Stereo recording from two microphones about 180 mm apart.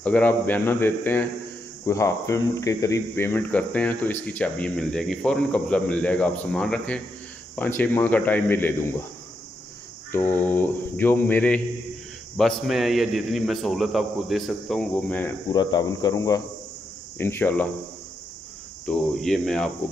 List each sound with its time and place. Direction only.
0.0 s speech: 10° left (ahead or behind)
10.1 s a man's voice: 10° left (ahead or behind)
15.5 s speech: 25° left (ahead or behind)
18.9 s a man's voice: centre (ahead or behind)